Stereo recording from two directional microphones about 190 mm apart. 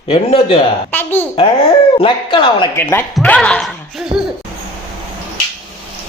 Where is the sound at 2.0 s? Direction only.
25° left (ahead or behind).